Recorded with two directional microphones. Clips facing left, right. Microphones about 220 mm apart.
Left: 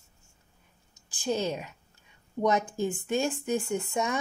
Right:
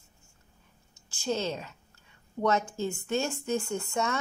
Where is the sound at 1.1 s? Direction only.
15° left (ahead or behind).